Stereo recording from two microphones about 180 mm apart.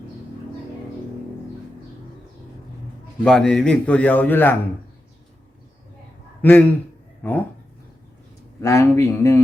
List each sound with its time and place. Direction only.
3.2 s a man's voice: 5° left (ahead or behind)
6.4 s a man's voice: 10° left (ahead or behind)
8.6 s a man's voice: 15° left (ahead or behind)